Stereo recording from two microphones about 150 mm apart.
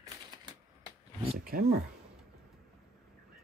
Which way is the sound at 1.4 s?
75° right (ahead or behind).